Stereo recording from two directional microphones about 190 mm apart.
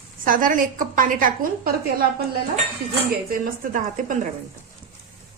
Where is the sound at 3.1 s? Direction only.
45° right (ahead or behind).